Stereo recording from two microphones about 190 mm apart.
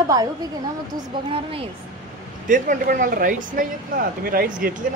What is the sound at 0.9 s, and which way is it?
Speech, 30° right (ahead or behind).